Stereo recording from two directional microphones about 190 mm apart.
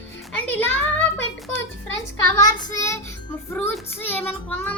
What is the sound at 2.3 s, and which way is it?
Child singing, 20° left (ahead or behind).